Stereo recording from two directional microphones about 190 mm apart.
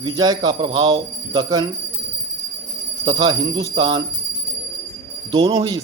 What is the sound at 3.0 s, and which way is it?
Speech, 20° right (ahead or behind).